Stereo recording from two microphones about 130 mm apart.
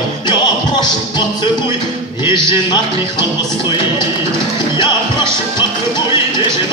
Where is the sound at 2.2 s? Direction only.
35° left (ahead or behind).